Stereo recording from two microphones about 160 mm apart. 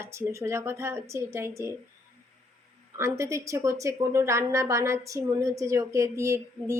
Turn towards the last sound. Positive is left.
turn(degrees=-20)  # may be behind; listen again after turning